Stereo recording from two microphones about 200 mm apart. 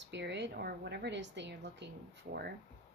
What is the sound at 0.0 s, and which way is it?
A woman's voice, 60° right (ahead or behind).